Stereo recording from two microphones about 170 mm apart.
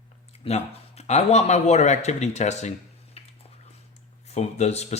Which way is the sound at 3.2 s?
35° left (ahead or behind).